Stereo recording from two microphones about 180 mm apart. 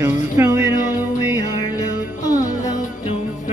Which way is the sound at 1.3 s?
20° left (ahead or behind).